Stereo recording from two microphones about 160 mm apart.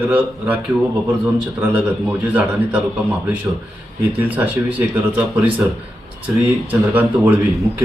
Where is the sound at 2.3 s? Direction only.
10° right (ahead or behind).